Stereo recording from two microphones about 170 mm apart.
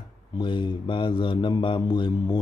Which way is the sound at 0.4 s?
30° left (ahead or behind).